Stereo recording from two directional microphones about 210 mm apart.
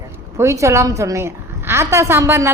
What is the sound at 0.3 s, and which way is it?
A woman's voice, 15° right (ahead or behind).